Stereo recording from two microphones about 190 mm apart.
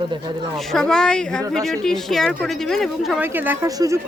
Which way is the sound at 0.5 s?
Centre (ahead or behind).